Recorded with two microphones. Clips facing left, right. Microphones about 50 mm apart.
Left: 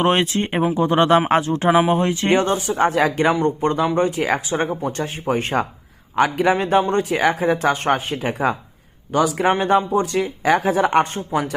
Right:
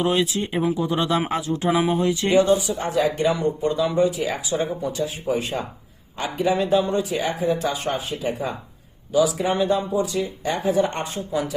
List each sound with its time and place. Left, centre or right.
0.0 s speech: left
2.7 s speech: left
6.9 s speech: left
7.3 s speech: left
11.0 s speech: left